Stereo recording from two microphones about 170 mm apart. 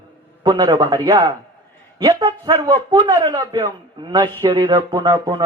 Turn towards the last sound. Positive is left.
turn(degrees=-25)  # may be behind; listen again after turning